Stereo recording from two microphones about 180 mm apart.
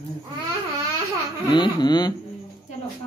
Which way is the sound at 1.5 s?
25° left (ahead or behind).